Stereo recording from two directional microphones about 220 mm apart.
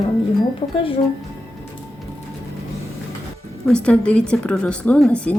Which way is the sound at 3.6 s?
5° left (ahead or behind).